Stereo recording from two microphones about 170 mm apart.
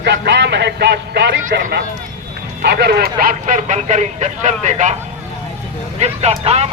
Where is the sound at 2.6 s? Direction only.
70° right (ahead or behind); by 4.9 s 45° right (ahead or behind).